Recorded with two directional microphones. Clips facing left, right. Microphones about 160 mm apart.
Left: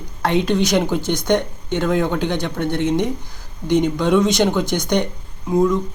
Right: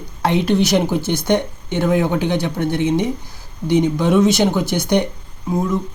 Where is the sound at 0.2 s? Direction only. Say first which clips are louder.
Right 1 dB; 10° right (ahead or behind).